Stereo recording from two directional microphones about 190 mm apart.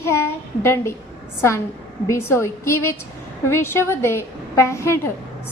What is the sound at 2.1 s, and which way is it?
A woman's voice, 15° left (ahead or behind).